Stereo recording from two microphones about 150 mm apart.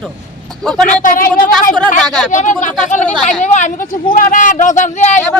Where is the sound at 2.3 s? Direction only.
55° left (ahead or behind).